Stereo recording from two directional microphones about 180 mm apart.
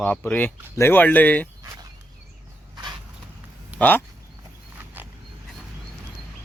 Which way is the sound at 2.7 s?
25° right (ahead or behind).